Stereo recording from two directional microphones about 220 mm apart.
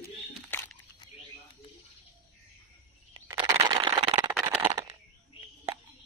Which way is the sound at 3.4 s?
20° right (ahead or behind).